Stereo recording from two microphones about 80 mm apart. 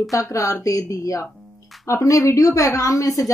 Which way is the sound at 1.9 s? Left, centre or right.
Left.